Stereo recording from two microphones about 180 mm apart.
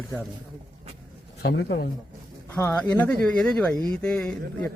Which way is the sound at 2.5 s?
10° left (ahead or behind).